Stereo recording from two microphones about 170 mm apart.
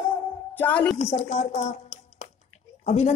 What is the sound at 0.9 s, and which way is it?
A woman's voice, 40° left (ahead or behind).